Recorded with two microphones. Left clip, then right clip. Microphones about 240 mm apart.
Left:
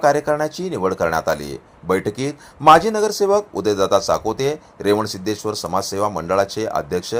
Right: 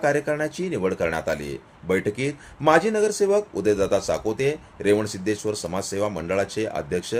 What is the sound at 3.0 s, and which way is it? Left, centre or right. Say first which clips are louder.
Speech: left 3 dB; centre.